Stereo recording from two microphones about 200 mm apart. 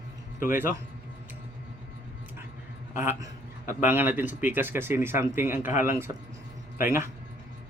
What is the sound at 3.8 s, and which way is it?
Speech, 10° right (ahead or behind).